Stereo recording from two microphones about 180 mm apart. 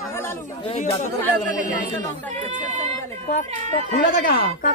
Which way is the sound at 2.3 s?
45° right (ahead or behind).